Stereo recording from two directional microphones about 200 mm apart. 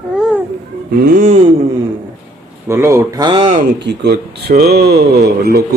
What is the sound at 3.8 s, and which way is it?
Speech, 55° right (ahead or behind).